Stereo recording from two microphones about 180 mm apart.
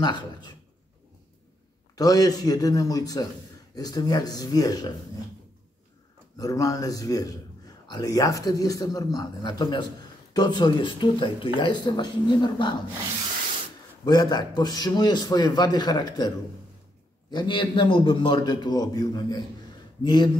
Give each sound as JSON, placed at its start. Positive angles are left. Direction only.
{"t": 0.0, "sound": "a man's voice", "side_deg": 25}
{"t": 2.0, "sound": "a man's voice", "side_deg": 20}
{"t": 6.3, "sound": "a man's voice", "side_deg": 20}
{"t": 14.0, "sound": "a man's voice", "side_deg": 25}
{"t": 17.3, "sound": "a man's voice", "side_deg": 25}